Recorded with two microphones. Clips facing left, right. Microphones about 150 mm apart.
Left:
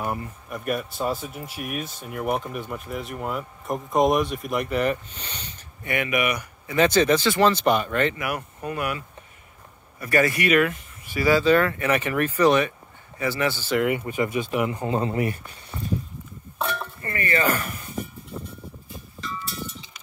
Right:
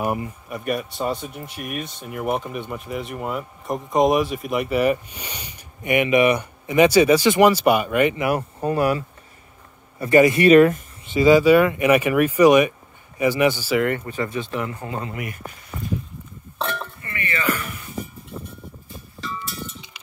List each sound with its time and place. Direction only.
0.0 s speech: 15° right (ahead or behind)
0.5 s speech: centre (ahead or behind); by 6.8 s 25° right (ahead or behind)
6.8 s speech: 10° right (ahead or behind)
8.2 s speech: 30° right (ahead or behind)
9.9 s speech: 20° right (ahead or behind)
11.1 s speech: 20° right (ahead or behind)
13.7 s speech: 5° left (ahead or behind); by 15.4 s 30° left (ahead or behind)
16.5 s dishes: centre (ahead or behind)
17.0 s a sound: 40° left (ahead or behind)